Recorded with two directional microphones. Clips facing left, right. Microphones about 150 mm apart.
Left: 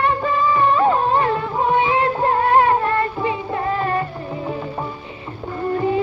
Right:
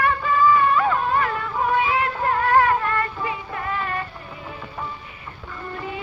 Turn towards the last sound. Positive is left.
turn(degrees=35)  # may be behind; listen again after turning